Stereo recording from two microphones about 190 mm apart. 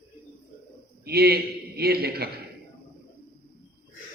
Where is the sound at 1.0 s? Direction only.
55° right (ahead or behind).